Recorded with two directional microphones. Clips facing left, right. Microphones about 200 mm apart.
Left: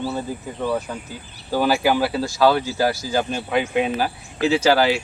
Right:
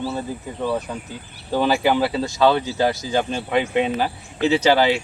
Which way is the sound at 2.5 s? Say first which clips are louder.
Even; 20° right (ahead or behind).